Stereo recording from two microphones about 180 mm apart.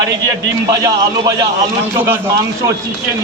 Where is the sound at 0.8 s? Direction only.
20° right (ahead or behind).